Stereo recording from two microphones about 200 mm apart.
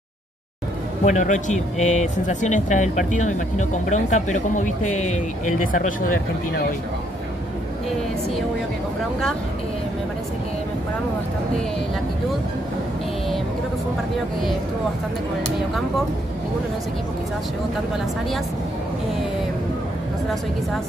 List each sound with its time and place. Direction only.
1.0 s speech: 40° left (ahead or behind)